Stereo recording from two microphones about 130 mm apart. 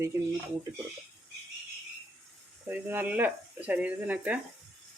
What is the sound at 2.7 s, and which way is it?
Speech, 15° right (ahead or behind).